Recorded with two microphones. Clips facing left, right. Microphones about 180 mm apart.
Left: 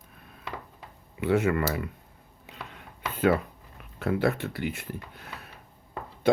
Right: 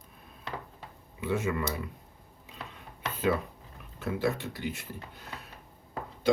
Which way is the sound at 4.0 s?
65° left (ahead or behind).